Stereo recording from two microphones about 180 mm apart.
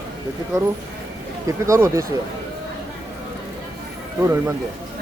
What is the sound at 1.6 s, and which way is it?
Speech, 15° right (ahead or behind).